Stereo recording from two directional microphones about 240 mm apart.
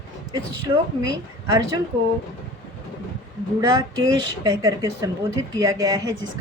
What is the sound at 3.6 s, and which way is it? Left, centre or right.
Speech, centre.